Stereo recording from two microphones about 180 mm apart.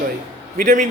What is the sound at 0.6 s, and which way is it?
Speech, 45° right (ahead or behind).